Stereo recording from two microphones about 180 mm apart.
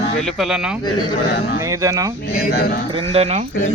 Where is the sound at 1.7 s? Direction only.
20° right (ahead or behind).